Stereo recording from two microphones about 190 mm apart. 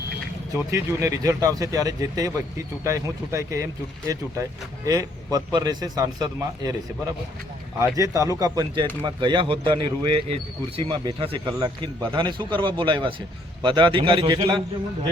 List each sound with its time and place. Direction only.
0.5 s speech: 15° right (ahead or behind)
7.9 s speech: 15° right (ahead or behind)